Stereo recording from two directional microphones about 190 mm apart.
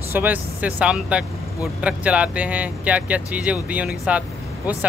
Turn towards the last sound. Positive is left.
turn(degrees=-5)  # may be behind; listen again after turning